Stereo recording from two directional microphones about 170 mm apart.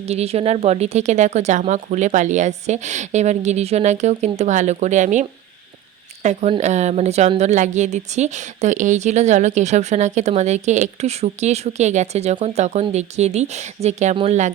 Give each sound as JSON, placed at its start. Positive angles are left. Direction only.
{"t": 0.0, "sound": "a woman's voice", "side_deg": -40}
{"t": 6.2, "sound": "a woman's voice", "side_deg": -45}